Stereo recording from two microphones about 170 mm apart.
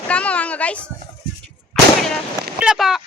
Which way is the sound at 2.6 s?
5° right (ahead or behind).